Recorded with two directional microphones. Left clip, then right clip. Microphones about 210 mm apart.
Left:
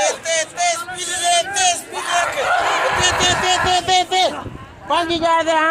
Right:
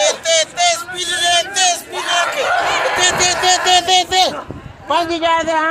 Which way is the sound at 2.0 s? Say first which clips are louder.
Right 2 dB; centre (ahead or behind).